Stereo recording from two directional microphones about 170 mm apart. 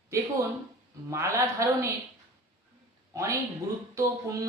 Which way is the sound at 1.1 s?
15° right (ahead or behind).